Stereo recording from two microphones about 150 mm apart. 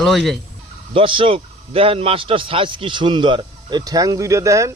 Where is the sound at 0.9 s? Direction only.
35° right (ahead or behind); by 4.7 s 20° right (ahead or behind).